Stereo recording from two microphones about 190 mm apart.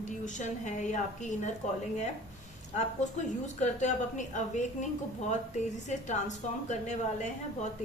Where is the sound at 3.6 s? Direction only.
40° left (ahead or behind).